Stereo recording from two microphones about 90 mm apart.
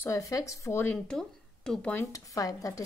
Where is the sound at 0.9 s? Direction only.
10° left (ahead or behind).